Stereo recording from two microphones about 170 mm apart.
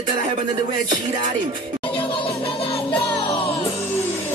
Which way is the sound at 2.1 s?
30° left (ahead or behind).